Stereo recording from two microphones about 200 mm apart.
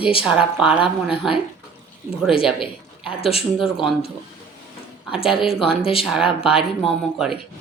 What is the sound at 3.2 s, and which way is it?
Speech, 30° left (ahead or behind).